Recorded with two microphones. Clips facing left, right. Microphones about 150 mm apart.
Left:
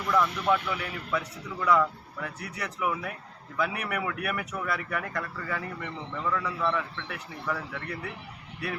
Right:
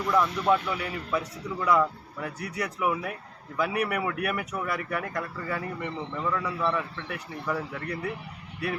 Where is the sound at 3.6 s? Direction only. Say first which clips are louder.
Right 3 dB; 20° right (ahead or behind).